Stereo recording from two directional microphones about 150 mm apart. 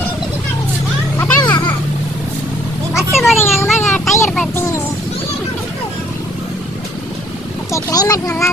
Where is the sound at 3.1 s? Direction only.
Centre (ahead or behind).